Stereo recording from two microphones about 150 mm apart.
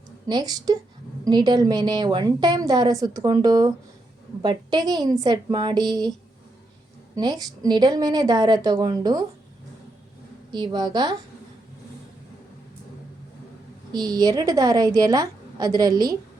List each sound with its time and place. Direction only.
0.3 s a woman's voice: 25° right (ahead or behind)
7.2 s a woman's voice: 25° right (ahead or behind)
10.5 s a woman's voice: 30° right (ahead or behind)
13.9 s a woman's voice: 25° right (ahead or behind)